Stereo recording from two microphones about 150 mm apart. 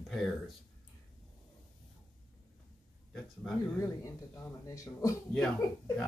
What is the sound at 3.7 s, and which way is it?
Speech, 20° left (ahead or behind).